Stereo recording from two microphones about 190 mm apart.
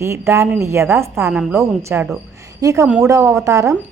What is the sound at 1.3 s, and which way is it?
A woman's voice, 5° right (ahead or behind).